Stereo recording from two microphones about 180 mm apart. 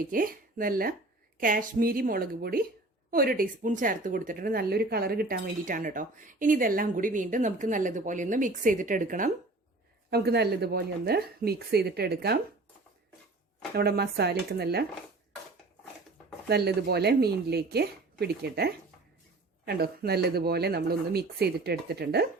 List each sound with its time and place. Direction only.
0.1 s speech: 50° right (ahead or behind)
10.1 s speech: 65° right (ahead or behind)
13.7 s speech: 60° right (ahead or behind)
16.5 s speech: 65° right (ahead or behind)